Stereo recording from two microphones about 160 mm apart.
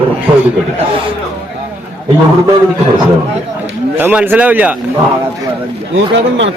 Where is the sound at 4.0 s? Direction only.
10° right (ahead or behind).